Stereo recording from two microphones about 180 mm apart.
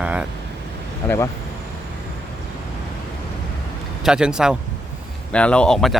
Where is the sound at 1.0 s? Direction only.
15° left (ahead or behind).